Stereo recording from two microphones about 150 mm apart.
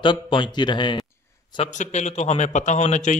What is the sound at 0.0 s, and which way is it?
Speech, 35° left (ahead or behind).